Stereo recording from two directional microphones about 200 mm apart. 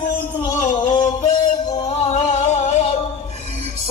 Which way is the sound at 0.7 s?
25° left (ahead or behind).